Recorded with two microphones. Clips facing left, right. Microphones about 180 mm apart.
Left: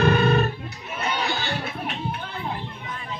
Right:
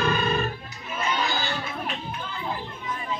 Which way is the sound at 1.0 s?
65° left (ahead or behind).